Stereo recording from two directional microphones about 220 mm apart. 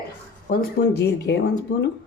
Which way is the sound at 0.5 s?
45° left (ahead or behind).